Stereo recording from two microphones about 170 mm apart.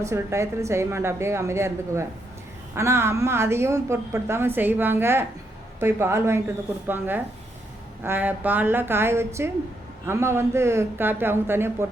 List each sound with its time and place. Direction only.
0.0 s a woman's voice: 15° right (ahead or behind)